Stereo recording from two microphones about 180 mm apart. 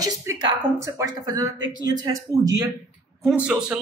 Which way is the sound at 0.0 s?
20° right (ahead or behind).